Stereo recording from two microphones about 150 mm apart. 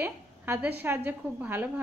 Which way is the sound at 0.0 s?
10° right (ahead or behind).